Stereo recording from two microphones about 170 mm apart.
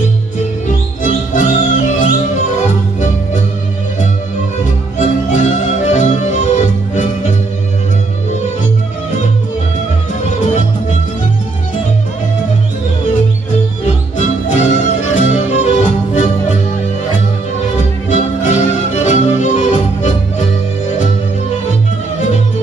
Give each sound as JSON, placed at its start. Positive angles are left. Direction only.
{"t": 0.7, "sound": "music", "side_deg": 50}
{"t": 4.6, "sound": "music", "side_deg": 45}
{"t": 10.4, "sound": "music", "side_deg": 45}
{"t": 13.8, "sound": "music", "side_deg": 40}
{"t": 18.1, "sound": "music", "side_deg": 45}